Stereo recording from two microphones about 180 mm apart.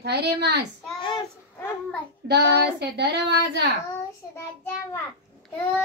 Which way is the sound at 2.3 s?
70° right (ahead or behind).